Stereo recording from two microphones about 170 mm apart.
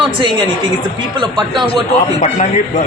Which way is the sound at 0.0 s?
30° right (ahead or behind).